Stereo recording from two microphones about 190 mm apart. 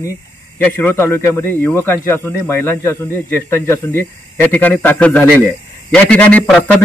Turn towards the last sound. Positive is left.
turn(degrees=5)  # may be behind; listen again after turning